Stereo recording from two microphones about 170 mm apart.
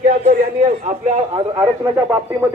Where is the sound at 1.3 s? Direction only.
20° right (ahead or behind).